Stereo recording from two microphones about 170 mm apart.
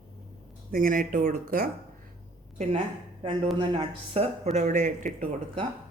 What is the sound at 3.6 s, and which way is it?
Speech, 30° right (ahead or behind).